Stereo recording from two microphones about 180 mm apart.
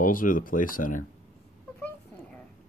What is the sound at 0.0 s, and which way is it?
Speech, 50° left (ahead or behind).